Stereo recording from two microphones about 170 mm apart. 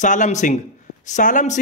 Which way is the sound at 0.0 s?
45° left (ahead or behind).